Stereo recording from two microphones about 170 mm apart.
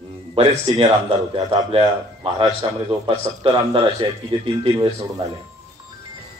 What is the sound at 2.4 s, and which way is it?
Speech, 20° right (ahead or behind).